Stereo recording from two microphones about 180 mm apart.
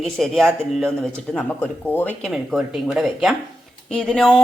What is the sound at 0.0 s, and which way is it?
A woman's voice, centre (ahead or behind).